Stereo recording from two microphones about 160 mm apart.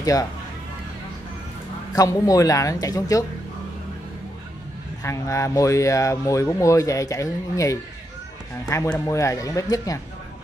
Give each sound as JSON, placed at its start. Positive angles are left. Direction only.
{"t": 0.0, "sound": "speech", "side_deg": 20}
{"t": 2.0, "sound": "speech", "side_deg": 20}
{"t": 5.0, "sound": "speech", "side_deg": 20}
{"t": 9.0, "sound": "speech", "side_deg": 20}